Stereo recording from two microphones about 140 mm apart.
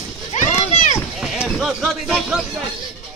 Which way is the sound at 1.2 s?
Centre (ahead or behind).